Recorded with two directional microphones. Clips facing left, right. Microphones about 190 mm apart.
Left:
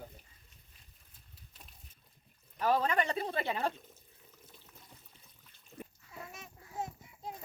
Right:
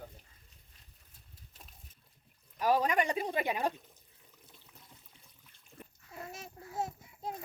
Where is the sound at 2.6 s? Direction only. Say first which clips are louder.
Right 1 dB; 10° right (ahead or behind).